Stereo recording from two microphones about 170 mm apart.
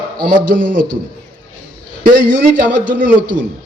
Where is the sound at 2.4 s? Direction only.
55° right (ahead or behind).